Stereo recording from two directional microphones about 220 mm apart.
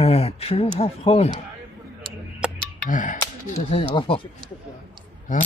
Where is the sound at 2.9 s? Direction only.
35° left (ahead or behind).